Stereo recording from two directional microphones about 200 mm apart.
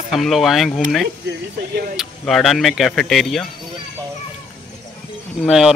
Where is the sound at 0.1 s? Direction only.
Centre (ahead or behind).